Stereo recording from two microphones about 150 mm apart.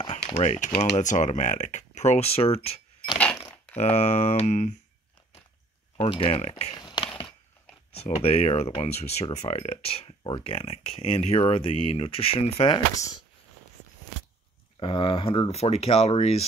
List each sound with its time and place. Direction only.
0.1 s typewriter: 45° left (ahead or behind)
0.7 s speech: 50° left (ahead or behind)
3.2 s cash register: 10° left (ahead or behind)
3.7 s speech: 50° left (ahead or behind)
5.9 s speech: 35° left (ahead or behind)
6.7 s a sound: 30° left (ahead or behind)
7.9 s speech: 45° left (ahead or behind)
14.8 s speech: 35° left (ahead or behind)